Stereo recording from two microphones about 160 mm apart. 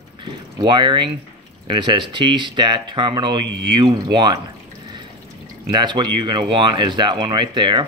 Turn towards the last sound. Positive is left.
turn(degrees=-30)  # may be behind; listen again after turning